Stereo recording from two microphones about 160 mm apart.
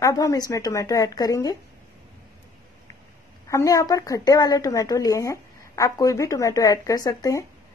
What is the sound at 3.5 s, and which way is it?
A woman's voice, 20° left (ahead or behind).